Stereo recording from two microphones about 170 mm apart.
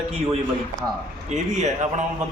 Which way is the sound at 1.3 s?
40° right (ahead or behind).